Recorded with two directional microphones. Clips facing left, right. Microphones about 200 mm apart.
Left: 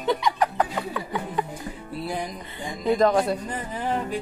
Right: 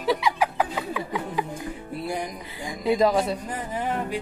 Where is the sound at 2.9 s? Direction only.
5° right (ahead or behind).